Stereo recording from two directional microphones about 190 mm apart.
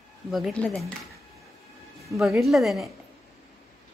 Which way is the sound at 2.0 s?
Centre (ahead or behind).